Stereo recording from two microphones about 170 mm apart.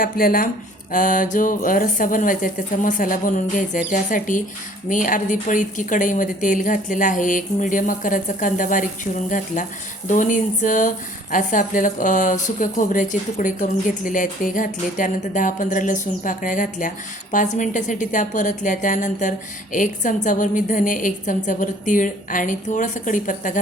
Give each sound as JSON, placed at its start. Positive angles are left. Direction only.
{"t": 0.0, "sound": "a woman's voice", "side_deg": 55}